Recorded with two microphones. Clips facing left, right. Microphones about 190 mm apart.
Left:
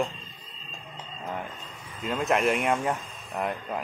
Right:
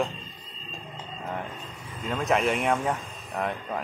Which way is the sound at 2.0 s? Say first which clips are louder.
Even; 5° left (ahead or behind).